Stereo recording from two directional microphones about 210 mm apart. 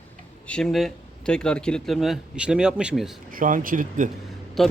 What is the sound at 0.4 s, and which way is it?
Speech, 5° left (ahead or behind).